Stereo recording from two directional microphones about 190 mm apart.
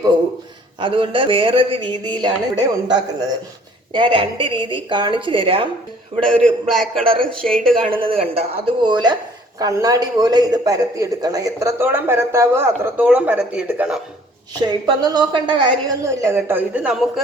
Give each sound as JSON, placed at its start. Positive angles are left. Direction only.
{"t": 0.8, "sound": "a man's voice", "side_deg": -25}
{"t": 6.2, "sound": "a man's voice", "side_deg": 5}
{"t": 7.9, "sound": "a man's voice", "side_deg": -30}
{"t": 14.5, "sound": "a man's voice", "side_deg": -20}
{"t": 16.0, "sound": "a man's voice", "side_deg": -15}